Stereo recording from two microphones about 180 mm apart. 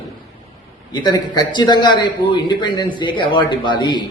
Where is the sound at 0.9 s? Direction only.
25° left (ahead or behind).